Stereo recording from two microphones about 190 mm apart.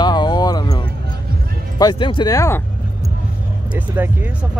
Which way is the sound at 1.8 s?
25° left (ahead or behind).